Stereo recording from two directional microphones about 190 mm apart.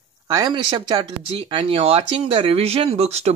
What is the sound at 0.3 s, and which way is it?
Speech, 20° right (ahead or behind).